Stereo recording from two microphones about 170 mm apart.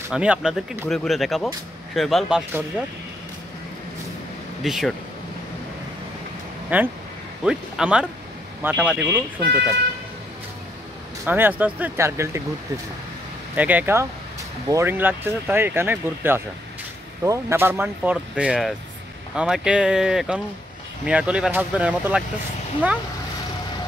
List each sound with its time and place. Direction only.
0.1 s speech: 5° right (ahead or behind)
4.6 s speech: centre (ahead or behind)
6.7 s speech: 10° right (ahead or behind)
11.2 s speech: 10° right (ahead or behind)
13.6 s speech: 10° right (ahead or behind)